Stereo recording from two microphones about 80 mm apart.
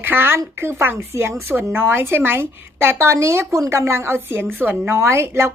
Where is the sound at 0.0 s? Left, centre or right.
Right.